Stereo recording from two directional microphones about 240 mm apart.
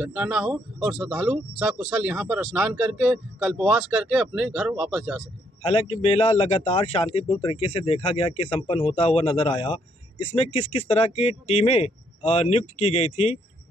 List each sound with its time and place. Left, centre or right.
0.0 s speech: centre
5.6 s a man's voice: left